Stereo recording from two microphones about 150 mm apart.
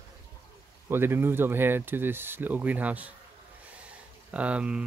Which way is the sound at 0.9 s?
15° right (ahead or behind).